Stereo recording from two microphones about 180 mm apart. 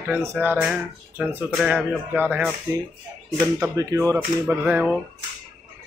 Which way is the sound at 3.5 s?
15° right (ahead or behind).